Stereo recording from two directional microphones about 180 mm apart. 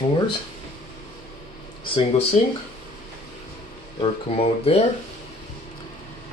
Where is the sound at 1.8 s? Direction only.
30° left (ahead or behind).